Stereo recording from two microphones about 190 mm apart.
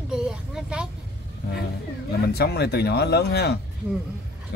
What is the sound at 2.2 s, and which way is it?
Speech, 60° left (ahead or behind).